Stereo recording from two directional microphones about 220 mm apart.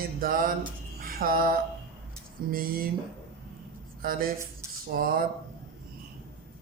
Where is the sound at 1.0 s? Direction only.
40° right (ahead or behind).